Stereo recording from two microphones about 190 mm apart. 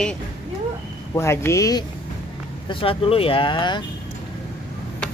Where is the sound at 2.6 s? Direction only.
30° left (ahead or behind).